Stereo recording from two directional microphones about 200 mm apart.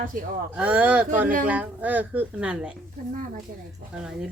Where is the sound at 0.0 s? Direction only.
45° right (ahead or behind).